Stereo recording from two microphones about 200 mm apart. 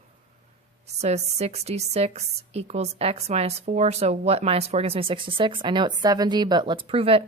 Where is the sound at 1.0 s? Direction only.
35° right (ahead or behind).